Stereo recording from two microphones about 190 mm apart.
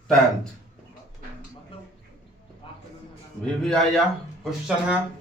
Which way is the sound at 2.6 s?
25° left (ahead or behind).